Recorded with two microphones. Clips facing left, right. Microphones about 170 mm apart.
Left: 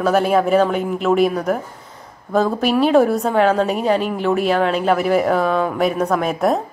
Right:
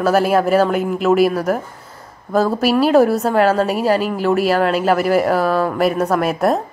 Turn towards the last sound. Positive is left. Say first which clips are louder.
# right 1 dB
turn(degrees=-5)  # may be behind; listen again after turning